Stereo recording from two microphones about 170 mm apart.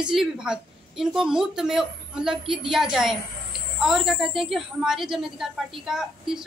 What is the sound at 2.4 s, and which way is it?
Speech, 30° right (ahead or behind).